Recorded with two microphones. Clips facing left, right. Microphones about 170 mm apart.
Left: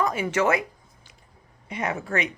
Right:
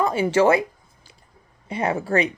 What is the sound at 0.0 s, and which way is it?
Speech, 30° right (ahead or behind).